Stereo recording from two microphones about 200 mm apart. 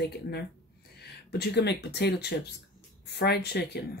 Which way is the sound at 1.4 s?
55° left (ahead or behind).